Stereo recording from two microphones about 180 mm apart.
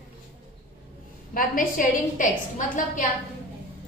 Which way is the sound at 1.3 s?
50° left (ahead or behind).